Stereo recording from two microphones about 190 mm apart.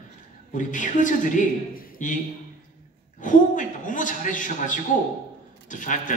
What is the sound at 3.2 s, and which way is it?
A man's voice, 45° left (ahead or behind).